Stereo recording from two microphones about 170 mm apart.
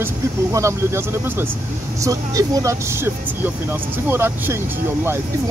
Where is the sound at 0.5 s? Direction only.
15° right (ahead or behind).